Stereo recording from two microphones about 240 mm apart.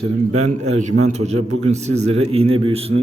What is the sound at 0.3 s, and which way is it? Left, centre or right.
A man's voice, right.